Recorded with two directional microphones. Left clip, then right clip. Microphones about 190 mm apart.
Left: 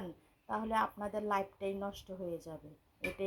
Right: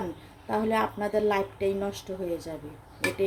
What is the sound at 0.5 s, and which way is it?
A woman's voice, 25° left (ahead or behind).